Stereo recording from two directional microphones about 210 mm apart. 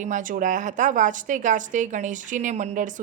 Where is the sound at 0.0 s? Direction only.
40° right (ahead or behind).